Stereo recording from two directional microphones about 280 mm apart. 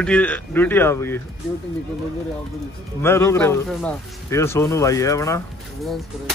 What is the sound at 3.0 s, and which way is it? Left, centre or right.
Speech, centre.